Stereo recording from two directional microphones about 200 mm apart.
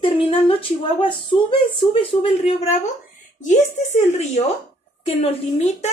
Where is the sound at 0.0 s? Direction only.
25° left (ahead or behind).